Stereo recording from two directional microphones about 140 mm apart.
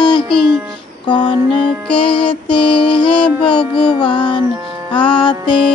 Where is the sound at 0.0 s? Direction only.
35° left (ahead or behind).